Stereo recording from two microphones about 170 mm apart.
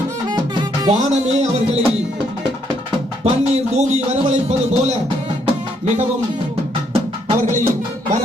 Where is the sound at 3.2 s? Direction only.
40° right (ahead or behind).